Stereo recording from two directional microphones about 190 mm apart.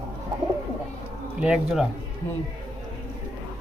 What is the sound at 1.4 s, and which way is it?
Speech, 5° right (ahead or behind).